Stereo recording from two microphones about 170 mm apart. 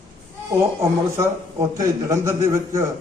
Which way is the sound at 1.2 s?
15° right (ahead or behind).